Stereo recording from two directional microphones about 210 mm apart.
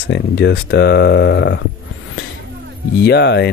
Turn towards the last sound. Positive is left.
turn(degrees=55)  # may be behind; listen again after turning